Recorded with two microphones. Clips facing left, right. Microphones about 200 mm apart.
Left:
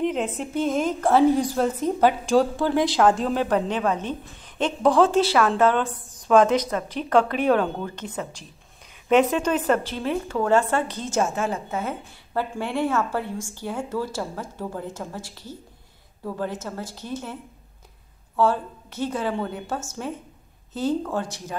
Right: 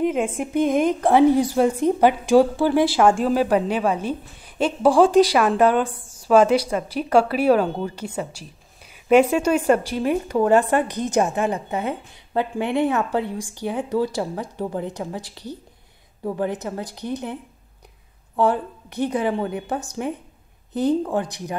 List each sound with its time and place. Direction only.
0.0 s a woman's voice: 10° right (ahead or behind)